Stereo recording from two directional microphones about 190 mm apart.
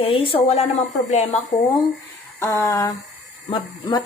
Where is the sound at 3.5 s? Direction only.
25° left (ahead or behind).